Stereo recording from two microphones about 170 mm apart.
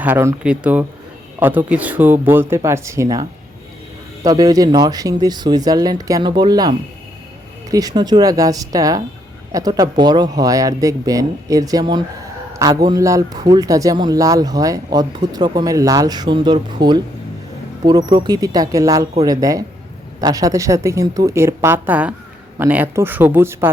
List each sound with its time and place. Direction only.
0.0 s a man's voice: 15° right (ahead or behind)